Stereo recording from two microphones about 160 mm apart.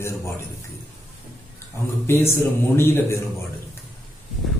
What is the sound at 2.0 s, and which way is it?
A man's voice, 15° left (ahead or behind).